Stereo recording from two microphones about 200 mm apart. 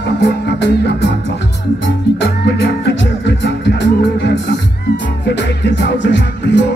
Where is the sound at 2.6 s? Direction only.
60° left (ahead or behind).